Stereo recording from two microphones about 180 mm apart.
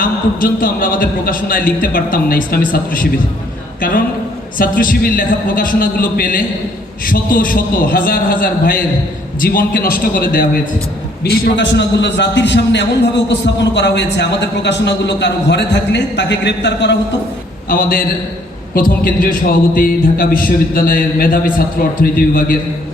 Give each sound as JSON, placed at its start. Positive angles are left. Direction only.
{"t": 0.0, "sound": "a man's voice", "side_deg": 50}
{"t": 4.5, "sound": "a man's voice", "side_deg": 50}
{"t": 17.7, "sound": "a man's voice", "side_deg": 55}